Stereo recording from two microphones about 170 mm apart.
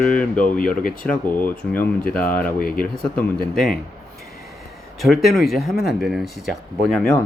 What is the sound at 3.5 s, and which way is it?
Speech, 5° left (ahead or behind).